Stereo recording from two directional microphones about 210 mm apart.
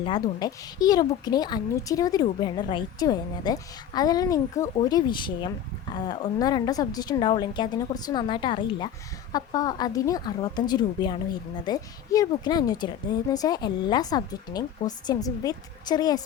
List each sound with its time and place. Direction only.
0.0 s a woman's voice: 20° left (ahead or behind)